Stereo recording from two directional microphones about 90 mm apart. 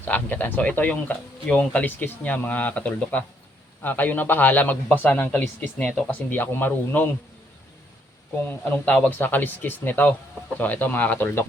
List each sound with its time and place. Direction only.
0.0 s a man's voice: 20° left (ahead or behind)
8.4 s a man's voice: 20° left (ahead or behind)